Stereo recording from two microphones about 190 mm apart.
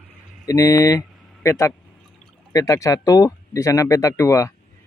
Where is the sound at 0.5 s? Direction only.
20° left (ahead or behind).